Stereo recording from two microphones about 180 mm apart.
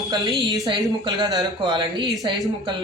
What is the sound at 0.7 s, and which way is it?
Speech, 25° right (ahead or behind).